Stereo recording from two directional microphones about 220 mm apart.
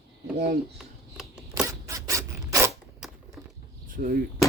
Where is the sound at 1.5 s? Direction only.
15° right (ahead or behind).